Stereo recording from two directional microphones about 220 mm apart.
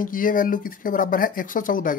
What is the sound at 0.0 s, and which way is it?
Speech, 40° left (ahead or behind).